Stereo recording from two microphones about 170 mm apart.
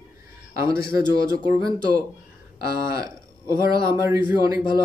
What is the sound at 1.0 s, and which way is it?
Speech, 20° right (ahead or behind).